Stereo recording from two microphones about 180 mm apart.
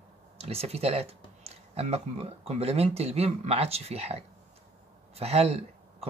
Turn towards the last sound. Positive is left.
turn(degrees=-35)  # may be behind; listen again after turning